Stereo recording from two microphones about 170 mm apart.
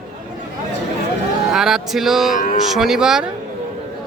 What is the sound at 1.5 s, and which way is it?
Speech, 5° right (ahead or behind).